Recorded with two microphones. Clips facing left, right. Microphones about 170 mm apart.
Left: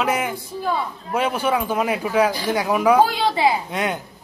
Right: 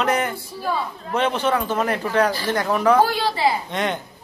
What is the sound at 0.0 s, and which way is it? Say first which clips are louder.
A man's voice: right 1 dB; 5° left (ahead or behind).